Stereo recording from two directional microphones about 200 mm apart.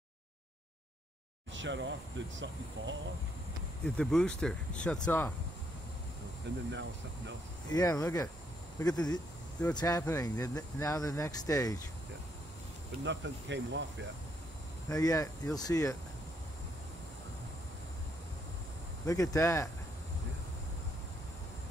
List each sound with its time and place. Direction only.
1.5 s speech: 65° right (ahead or behind)
3.8 s speech: 5° left (ahead or behind)
6.5 s speech: 60° right (ahead or behind)
7.7 s speech: 15° left (ahead or behind)
13.0 s speech: 60° right (ahead or behind)
14.9 s speech: 15° left (ahead or behind)
19.0 s speech: 15° left (ahead or behind)